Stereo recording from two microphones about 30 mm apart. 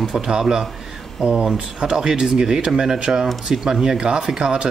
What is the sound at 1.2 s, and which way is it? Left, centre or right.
Speech, right.